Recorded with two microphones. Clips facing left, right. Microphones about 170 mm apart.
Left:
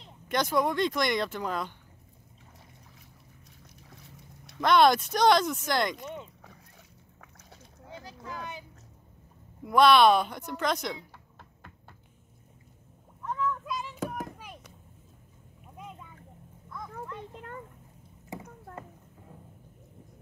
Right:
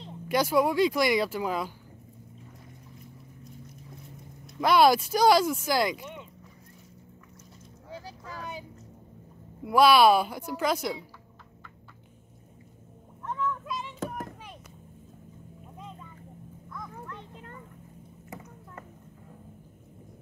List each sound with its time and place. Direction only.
0.3 s speech: 5° right (ahead or behind)
4.6 s speech: 5° right (ahead or behind)
8.0 s vehicle: 35° right (ahead or behind)
9.7 s speech: 5° right (ahead or behind)
13.2 s a sound: centre (ahead or behind)
15.8 s vehicle: 10° left (ahead or behind)